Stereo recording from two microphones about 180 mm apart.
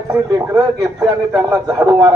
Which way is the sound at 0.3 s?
20° right (ahead or behind).